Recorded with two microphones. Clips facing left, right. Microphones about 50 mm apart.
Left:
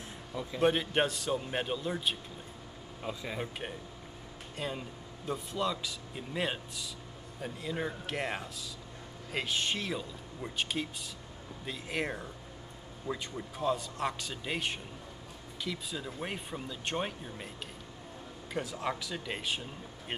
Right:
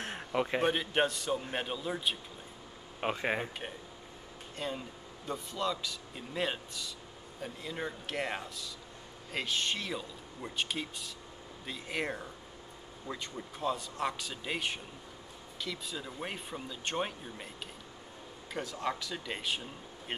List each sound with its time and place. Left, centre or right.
0.0 s a sound: right
0.7 s speech: centre
3.0 s speech: right
4.6 s speech: centre
18.5 s speech: centre